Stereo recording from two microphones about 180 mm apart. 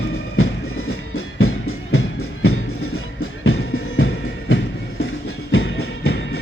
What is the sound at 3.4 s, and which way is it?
Music, 90° left.